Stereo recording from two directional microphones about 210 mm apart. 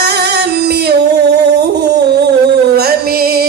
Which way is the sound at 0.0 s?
50° right (ahead or behind).